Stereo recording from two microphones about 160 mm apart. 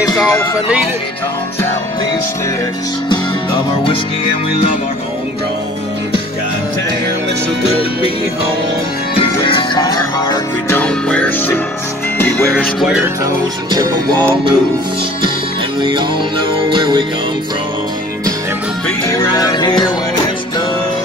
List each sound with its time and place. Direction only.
3.1 s music: 30° left (ahead or behind)
9.1 s music: 30° left (ahead or behind)
10.8 s music: 10° left (ahead or behind)
12.8 s music: 5° right (ahead or behind)
13.2 s music: 20° right (ahead or behind)
15.8 s music: 30° right (ahead or behind)
18.9 s music: 20° left (ahead or behind)